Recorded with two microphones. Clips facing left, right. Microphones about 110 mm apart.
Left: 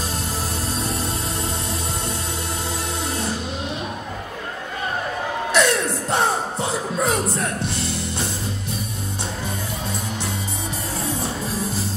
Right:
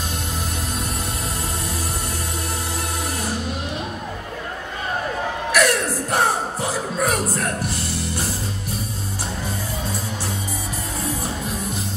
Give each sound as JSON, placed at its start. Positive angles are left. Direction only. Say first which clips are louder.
{"t": 5.5, "sound": "music", "louder": "even", "side_deg": 25}